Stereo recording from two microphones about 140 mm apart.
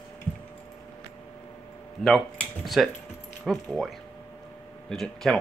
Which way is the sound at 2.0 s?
Centre (ahead or behind).